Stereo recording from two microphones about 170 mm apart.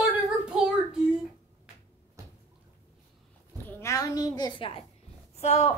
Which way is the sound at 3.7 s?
15° left (ahead or behind).